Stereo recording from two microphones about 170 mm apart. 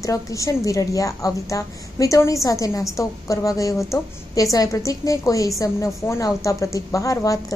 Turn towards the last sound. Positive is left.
turn(degrees=20)  # may be behind; listen again after turning